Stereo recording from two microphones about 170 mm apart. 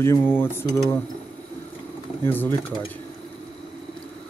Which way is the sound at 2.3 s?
10° left (ahead or behind).